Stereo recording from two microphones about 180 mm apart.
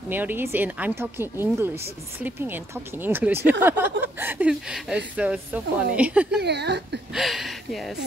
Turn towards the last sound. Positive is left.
turn(degrees=0)  # may be behind; listen again after turning